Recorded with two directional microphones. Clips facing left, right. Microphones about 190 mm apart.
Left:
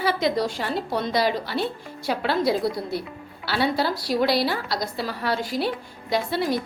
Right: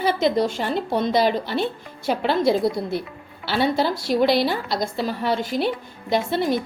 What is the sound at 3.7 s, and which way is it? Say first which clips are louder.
A woman's voice: right 3 dB; 25° right (ahead or behind).